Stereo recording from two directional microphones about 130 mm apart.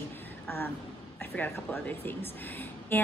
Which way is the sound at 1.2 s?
10° left (ahead or behind).